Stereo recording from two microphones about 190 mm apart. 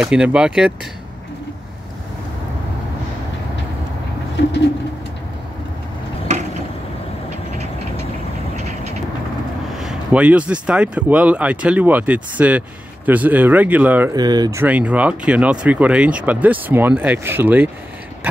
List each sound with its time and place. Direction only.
0.0 s speech: 5° right (ahead or behind)
8.5 s vehicle: 35° right (ahead or behind)
9.8 s speech: 5° right (ahead or behind)
14.1 s speech: 20° right (ahead or behind)